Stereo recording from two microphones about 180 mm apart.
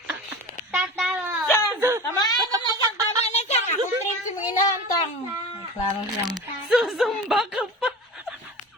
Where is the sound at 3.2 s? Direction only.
35° left (ahead or behind).